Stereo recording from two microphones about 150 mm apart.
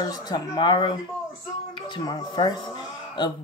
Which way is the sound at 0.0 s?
25° left (ahead or behind).